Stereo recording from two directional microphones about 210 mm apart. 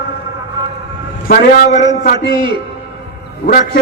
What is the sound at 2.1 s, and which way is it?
Speech, 25° right (ahead or behind).